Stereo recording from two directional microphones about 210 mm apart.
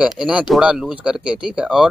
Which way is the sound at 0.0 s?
5° right (ahead or behind).